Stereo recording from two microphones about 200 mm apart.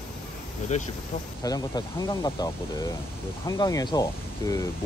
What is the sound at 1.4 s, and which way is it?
Speech, 20° left (ahead or behind).